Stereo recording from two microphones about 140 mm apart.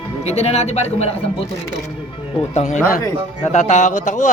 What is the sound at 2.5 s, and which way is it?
A man's voice, 55° left (ahead or behind).